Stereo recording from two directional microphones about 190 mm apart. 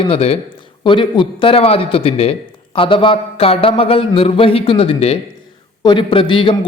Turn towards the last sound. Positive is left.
turn(degrees=25)  # may be behind; listen again after turning